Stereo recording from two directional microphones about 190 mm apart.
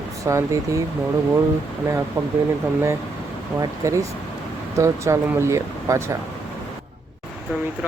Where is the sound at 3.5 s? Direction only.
15° right (ahead or behind).